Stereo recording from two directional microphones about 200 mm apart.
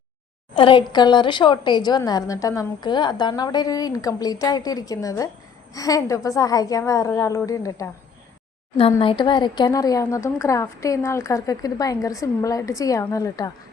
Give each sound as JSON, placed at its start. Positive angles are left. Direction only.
{"t": 0.5, "sound": "a woman's voice", "side_deg": 25}
{"t": 9.0, "sound": "speech", "side_deg": 25}